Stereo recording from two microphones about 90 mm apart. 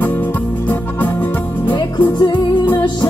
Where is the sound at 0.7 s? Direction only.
20° left (ahead or behind).